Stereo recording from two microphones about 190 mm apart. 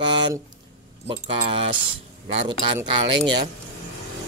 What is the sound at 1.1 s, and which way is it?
Speech, 30° right (ahead or behind).